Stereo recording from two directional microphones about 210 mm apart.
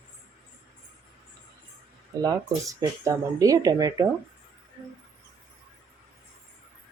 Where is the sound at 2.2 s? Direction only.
15° right (ahead or behind).